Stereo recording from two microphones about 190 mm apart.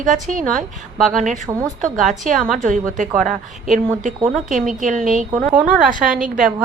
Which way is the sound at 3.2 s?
40° right (ahead or behind).